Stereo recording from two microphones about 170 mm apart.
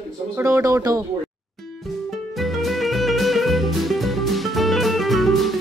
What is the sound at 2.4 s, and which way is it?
Music, centre (ahead or behind).